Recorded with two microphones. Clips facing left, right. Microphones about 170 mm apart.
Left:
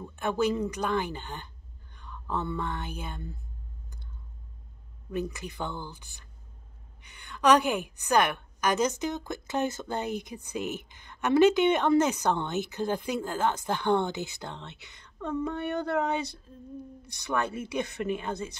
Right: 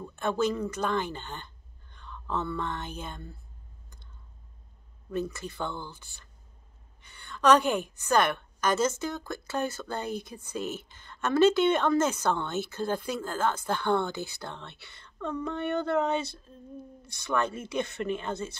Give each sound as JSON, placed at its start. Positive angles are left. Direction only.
{"t": 0.0, "sound": "a woman's voice", "side_deg": 15}
{"t": 5.1, "sound": "a woman's voice", "side_deg": 15}